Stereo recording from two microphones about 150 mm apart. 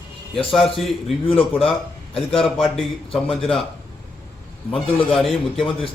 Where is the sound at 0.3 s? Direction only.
Centre (ahead or behind).